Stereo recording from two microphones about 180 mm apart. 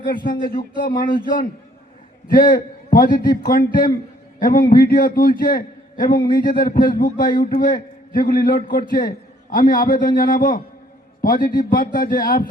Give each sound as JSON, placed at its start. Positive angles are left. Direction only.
{"t": 0.0, "sound": "a man's voice", "side_deg": 50}
{"t": 2.2, "sound": "a man's voice", "side_deg": 50}